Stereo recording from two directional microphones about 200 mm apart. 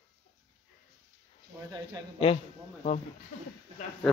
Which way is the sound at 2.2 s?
35° left (ahead or behind).